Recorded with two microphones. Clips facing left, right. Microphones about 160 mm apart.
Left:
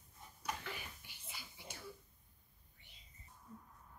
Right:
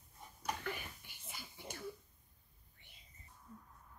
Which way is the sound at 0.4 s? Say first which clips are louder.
Right 3 dB; 50° right (ahead or behind).